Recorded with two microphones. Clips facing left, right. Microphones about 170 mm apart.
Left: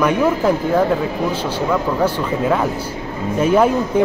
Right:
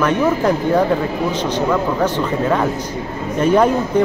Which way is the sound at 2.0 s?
5° left (ahead or behind).